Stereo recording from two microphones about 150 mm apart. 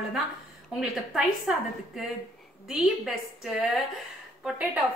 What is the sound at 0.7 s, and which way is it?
A woman's voice, 5° right (ahead or behind).